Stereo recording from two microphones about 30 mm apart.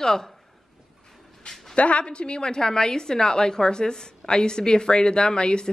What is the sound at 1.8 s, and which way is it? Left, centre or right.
A woman's voice, left.